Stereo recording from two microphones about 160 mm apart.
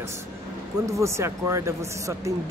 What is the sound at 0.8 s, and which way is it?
Speech, 20° right (ahead or behind).